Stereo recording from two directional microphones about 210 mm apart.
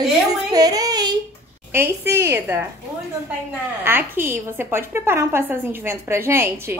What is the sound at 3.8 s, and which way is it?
A woman's voice, 10° right (ahead or behind).